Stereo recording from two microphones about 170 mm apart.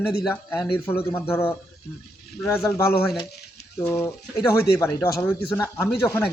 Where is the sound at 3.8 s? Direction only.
15° left (ahead or behind).